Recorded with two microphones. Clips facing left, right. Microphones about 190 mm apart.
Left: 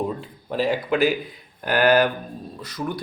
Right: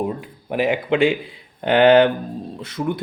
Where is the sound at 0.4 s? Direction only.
20° right (ahead or behind).